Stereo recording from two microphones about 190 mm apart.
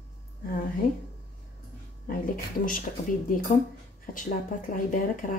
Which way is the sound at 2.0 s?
45° left (ahead or behind).